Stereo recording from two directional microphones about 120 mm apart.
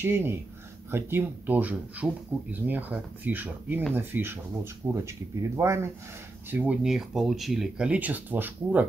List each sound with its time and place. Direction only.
0.0 s speech: 20° right (ahead or behind)
6.5 s speech: 10° right (ahead or behind)